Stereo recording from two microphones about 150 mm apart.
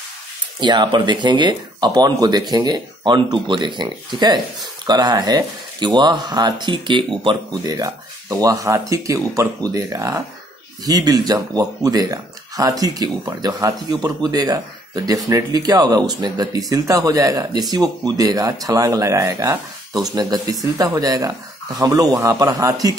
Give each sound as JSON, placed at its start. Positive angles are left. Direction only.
{"t": 0.6, "sound": "speech", "side_deg": -30}